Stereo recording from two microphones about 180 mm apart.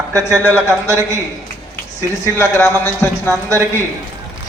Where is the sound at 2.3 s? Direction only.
15° left (ahead or behind).